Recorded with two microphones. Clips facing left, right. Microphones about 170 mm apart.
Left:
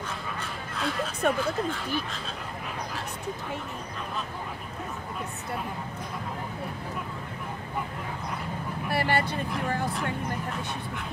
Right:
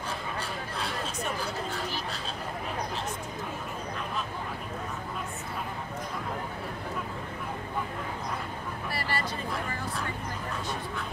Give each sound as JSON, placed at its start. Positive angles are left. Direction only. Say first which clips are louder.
{"t": 1.2, "sound": "speech", "louder": "left 12 dB", "side_deg": 60}
{"t": 8.9, "sound": "speech", "louder": "left 8 dB", "side_deg": 60}